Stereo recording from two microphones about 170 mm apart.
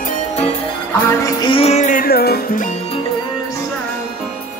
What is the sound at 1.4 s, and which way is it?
Music, 30° left (ahead or behind).